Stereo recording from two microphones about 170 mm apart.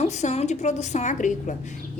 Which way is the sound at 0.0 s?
40° left (ahead or behind).